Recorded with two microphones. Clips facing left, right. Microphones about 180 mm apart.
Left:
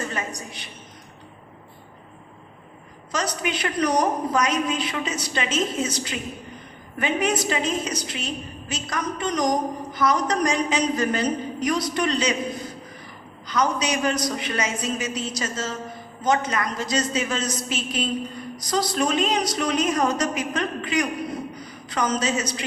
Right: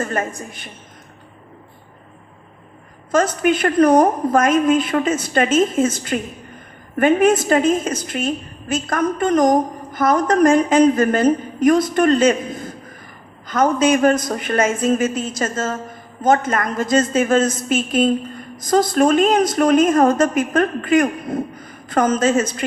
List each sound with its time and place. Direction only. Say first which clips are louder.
0.0 s a woman's voice: right 7 dB; 50° right (ahead or behind)
3.1 s a woman's voice: right 10 dB; 50° right (ahead or behind)